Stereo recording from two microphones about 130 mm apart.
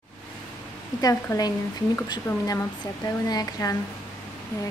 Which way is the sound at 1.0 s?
30° left (ahead or behind).